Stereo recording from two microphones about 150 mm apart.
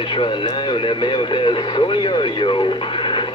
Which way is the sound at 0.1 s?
35° left (ahead or behind).